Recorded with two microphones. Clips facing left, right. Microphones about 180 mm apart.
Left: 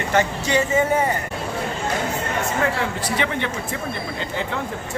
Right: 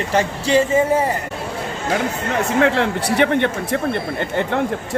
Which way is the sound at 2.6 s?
70° right (ahead or behind).